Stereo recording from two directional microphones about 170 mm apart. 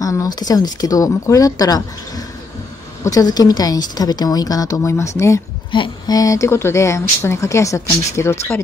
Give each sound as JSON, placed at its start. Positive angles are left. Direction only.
{"t": 0.0, "sound": "speech", "side_deg": 20}